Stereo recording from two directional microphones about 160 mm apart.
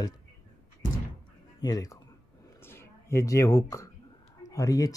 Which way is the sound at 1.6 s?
25° left (ahead or behind).